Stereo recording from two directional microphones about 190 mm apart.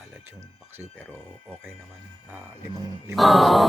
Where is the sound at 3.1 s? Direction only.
Centre (ahead or behind).